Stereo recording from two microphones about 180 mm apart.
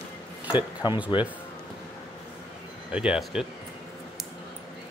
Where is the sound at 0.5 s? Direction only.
25° left (ahead or behind).